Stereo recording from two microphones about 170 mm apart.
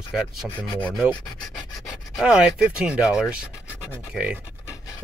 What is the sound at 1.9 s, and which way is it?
Speech, centre (ahead or behind).